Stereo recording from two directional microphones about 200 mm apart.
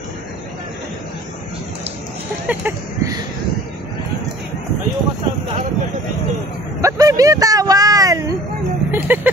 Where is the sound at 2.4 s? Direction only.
10° right (ahead or behind).